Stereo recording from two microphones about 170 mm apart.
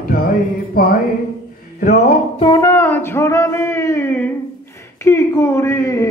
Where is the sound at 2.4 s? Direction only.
20° left (ahead or behind).